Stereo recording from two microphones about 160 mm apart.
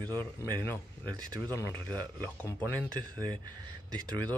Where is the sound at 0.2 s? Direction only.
10° left (ahead or behind).